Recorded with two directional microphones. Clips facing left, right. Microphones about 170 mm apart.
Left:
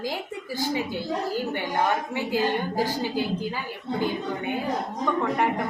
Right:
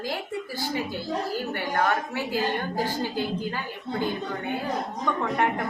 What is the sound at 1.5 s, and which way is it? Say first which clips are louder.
A woman's voice: right 1 dB; 20° left (ahead or behind).